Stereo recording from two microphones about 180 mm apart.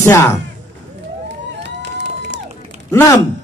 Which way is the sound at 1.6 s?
75° right (ahead or behind).